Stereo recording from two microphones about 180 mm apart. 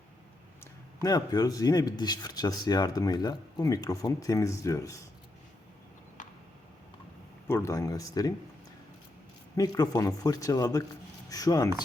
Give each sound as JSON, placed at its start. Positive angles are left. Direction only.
{"t": 0.6, "sound": "speech", "side_deg": 20}
{"t": 7.4, "sound": "speech", "side_deg": 15}
{"t": 9.6, "sound": "speech", "side_deg": 20}